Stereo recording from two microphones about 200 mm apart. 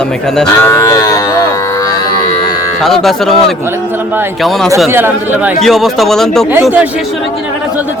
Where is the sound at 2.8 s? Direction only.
Centre (ahead or behind).